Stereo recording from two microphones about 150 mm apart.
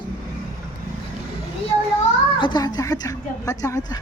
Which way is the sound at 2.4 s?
30° left (ahead or behind).